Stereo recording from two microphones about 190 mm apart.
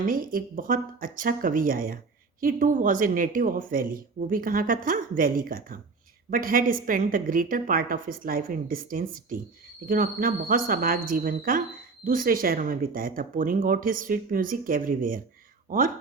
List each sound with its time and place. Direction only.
0.0 s speech: 45° right (ahead or behind)